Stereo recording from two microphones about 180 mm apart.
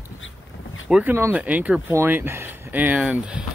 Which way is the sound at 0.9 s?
10° right (ahead or behind).